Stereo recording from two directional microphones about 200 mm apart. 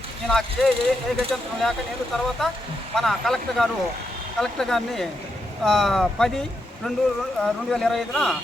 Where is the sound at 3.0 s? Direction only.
Centre (ahead or behind).